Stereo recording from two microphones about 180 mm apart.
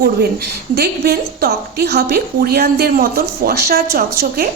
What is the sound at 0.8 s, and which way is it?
A woman's voice, 60° right (ahead or behind).